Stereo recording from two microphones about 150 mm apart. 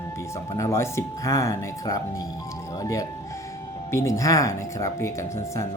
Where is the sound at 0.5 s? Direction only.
20° left (ahead or behind).